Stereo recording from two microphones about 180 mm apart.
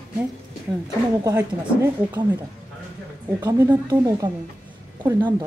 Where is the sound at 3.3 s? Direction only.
20° right (ahead or behind).